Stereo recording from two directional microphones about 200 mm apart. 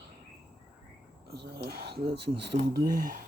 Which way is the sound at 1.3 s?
55° right (ahead or behind).